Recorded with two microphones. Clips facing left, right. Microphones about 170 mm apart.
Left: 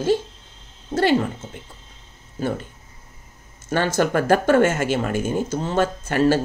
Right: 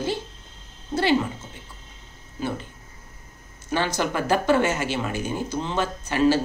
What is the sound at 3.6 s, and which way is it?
Speech, 50° left (ahead or behind).